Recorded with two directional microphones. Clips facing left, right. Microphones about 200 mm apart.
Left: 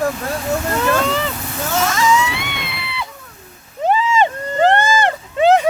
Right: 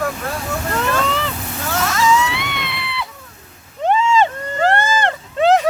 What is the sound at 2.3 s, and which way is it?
Screaming, centre (ahead or behind).